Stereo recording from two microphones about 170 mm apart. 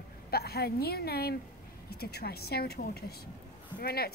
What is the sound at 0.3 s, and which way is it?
A woman's voice, 65° left (ahead or behind).